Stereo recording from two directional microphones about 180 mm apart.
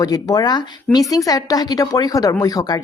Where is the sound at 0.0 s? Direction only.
20° left (ahead or behind).